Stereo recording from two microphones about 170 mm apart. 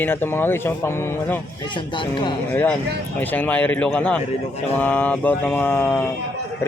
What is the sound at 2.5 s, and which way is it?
Mantra, 10° left (ahead or behind).